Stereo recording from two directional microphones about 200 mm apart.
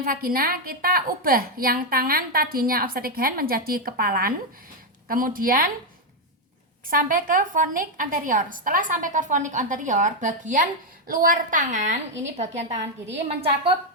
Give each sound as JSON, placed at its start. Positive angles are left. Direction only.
{"t": 0.0, "sound": "a woman's voice", "side_deg": -45}
{"t": 6.9, "sound": "a woman's voice", "side_deg": -45}